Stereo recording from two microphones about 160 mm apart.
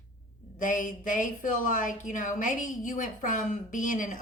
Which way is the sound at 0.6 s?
55° left (ahead or behind).